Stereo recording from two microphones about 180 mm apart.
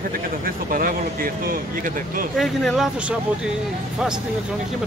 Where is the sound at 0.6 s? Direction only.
50° right (ahead or behind).